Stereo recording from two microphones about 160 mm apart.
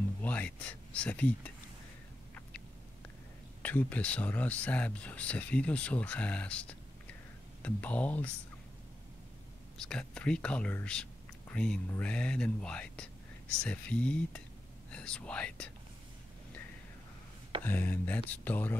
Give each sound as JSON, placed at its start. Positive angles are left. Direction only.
{"t": 0.2, "sound": "speech", "side_deg": 10}
{"t": 3.6, "sound": "speech", "side_deg": 10}
{"t": 9.8, "sound": "speech", "side_deg": 5}
{"t": 17.6, "sound": "speech", "side_deg": 10}